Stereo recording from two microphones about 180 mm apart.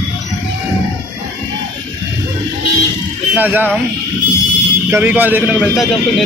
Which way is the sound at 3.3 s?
10° right (ahead or behind).